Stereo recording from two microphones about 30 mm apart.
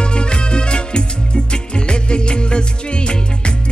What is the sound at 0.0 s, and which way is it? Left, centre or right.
Music, left.